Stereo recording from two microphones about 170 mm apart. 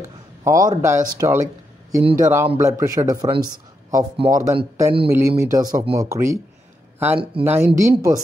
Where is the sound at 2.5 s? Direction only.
15° right (ahead or behind).